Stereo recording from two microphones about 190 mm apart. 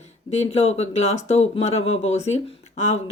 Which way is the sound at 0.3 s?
35° left (ahead or behind).